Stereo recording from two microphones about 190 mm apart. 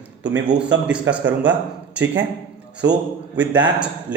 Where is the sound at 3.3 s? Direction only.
10° right (ahead or behind).